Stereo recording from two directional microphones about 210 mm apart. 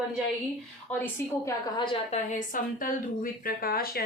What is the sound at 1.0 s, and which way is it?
Speech, 15° left (ahead or behind).